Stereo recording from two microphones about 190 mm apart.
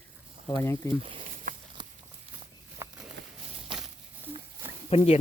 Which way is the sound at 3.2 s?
70° right (ahead or behind).